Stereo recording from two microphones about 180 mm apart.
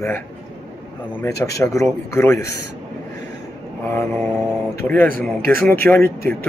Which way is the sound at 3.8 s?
15° left (ahead or behind).